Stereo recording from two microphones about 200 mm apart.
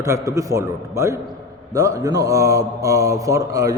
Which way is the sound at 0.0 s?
15° right (ahead or behind).